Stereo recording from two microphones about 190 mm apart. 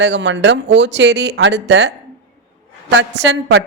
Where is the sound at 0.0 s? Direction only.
70° right (ahead or behind).